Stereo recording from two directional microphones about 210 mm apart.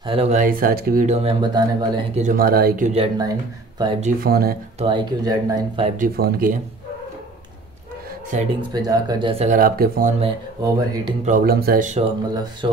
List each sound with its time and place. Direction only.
0.0 s speech: 25° right (ahead or behind)
2.2 s speech: 45° right (ahead or behind)
2.9 s speech: 25° right (ahead or behind)
4.2 s speech: 45° right (ahead or behind)
4.7 s speech: 25° right (ahead or behind)
5.9 s speech: 45° right (ahead or behind)
8.5 s speech: 20° right (ahead or behind)
9.6 s speech: 45° right (ahead or behind)
10.6 s speech: 20° right (ahead or behind)
11.2 s speech: 45° right (ahead or behind)
12.6 s speech: 20° right (ahead or behind)